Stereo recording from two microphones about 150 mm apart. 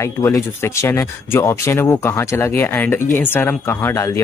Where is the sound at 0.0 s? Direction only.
20° left (ahead or behind).